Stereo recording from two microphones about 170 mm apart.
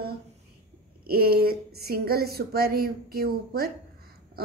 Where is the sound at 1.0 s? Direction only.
65° right (ahead or behind).